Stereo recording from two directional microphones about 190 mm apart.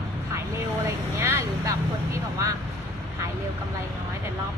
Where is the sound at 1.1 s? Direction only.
15° right (ahead or behind).